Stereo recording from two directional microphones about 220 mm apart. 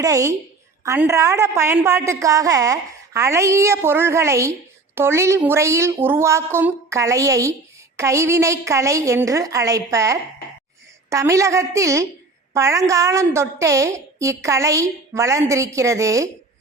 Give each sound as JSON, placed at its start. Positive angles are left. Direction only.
{"t": 0.0, "sound": "a woman's voice", "side_deg": -15}